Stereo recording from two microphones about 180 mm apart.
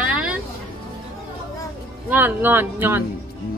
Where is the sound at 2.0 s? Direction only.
10° right (ahead or behind).